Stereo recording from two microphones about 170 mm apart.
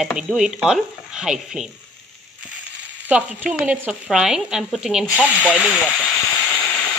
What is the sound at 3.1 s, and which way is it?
Speech, 10° right (ahead or behind).